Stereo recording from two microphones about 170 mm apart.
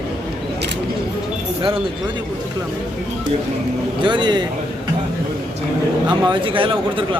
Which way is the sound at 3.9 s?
25° right (ahead or behind).